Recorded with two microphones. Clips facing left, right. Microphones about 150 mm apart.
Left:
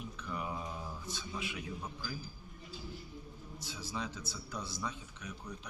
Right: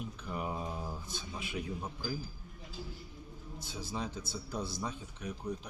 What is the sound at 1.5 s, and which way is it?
Speech, 30° right (ahead or behind).